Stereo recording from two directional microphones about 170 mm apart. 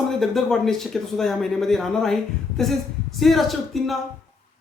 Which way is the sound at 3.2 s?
Centre (ahead or behind).